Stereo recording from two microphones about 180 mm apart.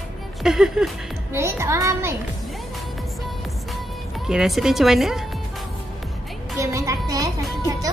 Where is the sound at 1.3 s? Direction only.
15° right (ahead or behind).